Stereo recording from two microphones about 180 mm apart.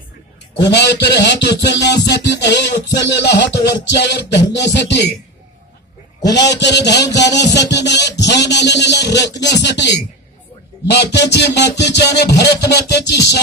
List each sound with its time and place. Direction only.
0.6 s music: 75° left (ahead or behind)
4.8 s speech: 40° left (ahead or behind)
6.5 s music: 70° left (ahead or behind)